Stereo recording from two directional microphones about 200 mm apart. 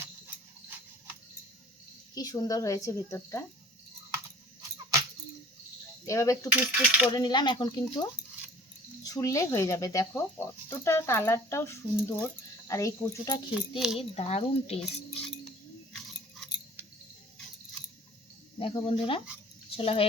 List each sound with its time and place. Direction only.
2.1 s speech: 20° left (ahead or behind)
6.1 s speech: 15° left (ahead or behind)
6.5 s speech: 5° right (ahead or behind)
7.1 s speech: 20° left (ahead or behind)
9.0 s speech: 15° left (ahead or behind)
13.5 s speech: 5° right (ahead or behind)
14.2 s a sound: 30° left (ahead or behind)
15.9 s chewing: 5° left (ahead or behind)
18.6 s speech: 25° left (ahead or behind)